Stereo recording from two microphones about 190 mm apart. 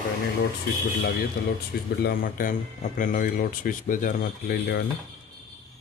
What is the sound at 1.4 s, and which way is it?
Speech, 50° left (ahead or behind).